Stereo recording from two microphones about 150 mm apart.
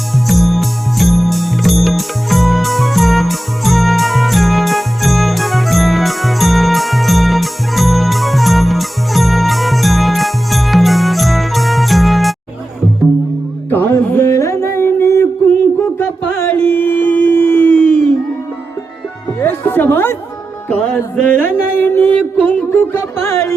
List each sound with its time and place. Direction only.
0.3 s music: centre (ahead or behind)
13.7 s music: 15° left (ahead or behind)
19.4 s chatter: 15° left (ahead or behind)
20.7 s music: 10° left (ahead or behind)